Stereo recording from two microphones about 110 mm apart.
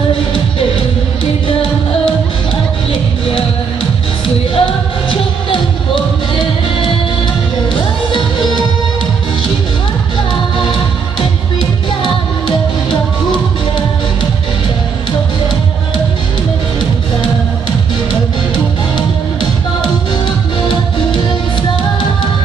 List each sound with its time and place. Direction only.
0.6 s music: 55° left (ahead or behind)
4.6 s music: 55° left (ahead or behind)